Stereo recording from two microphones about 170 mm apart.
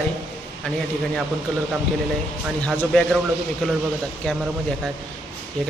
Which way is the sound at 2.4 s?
Centre (ahead or behind).